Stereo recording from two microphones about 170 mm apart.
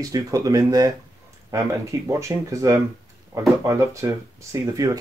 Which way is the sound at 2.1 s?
15° right (ahead or behind).